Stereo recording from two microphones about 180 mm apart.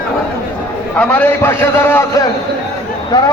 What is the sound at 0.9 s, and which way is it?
A man's voice, 10° left (ahead or behind).